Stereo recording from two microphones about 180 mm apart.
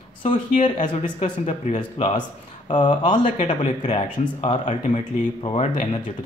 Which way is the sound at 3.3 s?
35° left (ahead or behind).